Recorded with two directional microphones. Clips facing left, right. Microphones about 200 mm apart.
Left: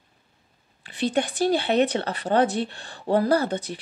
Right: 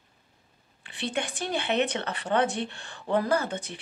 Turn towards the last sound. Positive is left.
turn(degrees=35)  # may be behind; listen again after turning